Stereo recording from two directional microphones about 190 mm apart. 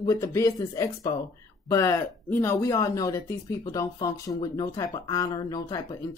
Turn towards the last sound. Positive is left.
turn(degrees=20)  # may be behind; listen again after turning